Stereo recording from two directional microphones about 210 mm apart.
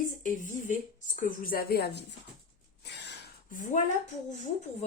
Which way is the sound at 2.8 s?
55° left (ahead or behind).